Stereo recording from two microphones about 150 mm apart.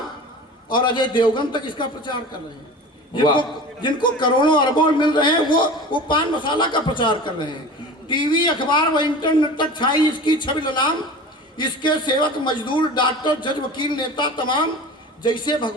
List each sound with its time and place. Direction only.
0.7 s a man's voice: 30° left (ahead or behind)